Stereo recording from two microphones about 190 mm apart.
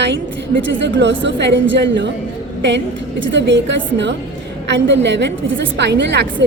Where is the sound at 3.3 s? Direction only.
70° right (ahead or behind).